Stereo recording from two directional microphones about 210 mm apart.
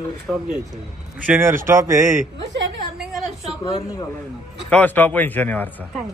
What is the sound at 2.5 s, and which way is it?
Speech, 60° right (ahead or behind).